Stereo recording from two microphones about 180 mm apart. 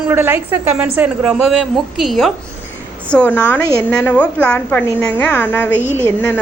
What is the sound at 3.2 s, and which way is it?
A woman's voice, 10° left (ahead or behind).